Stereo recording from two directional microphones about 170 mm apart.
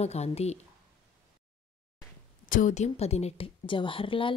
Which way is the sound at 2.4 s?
50° left (ahead or behind).